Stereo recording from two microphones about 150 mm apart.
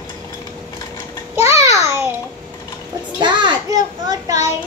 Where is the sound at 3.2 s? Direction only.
30° right (ahead or behind).